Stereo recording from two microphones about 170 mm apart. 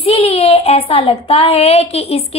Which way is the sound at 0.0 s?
35° left (ahead or behind).